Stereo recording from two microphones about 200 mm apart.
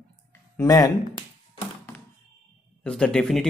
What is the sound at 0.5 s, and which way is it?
Speech, 20° left (ahead or behind).